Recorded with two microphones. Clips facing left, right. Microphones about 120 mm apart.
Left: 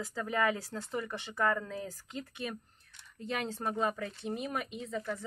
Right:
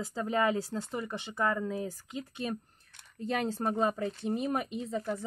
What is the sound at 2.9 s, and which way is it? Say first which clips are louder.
Speech: right 4 dB; 50° right (ahead or behind).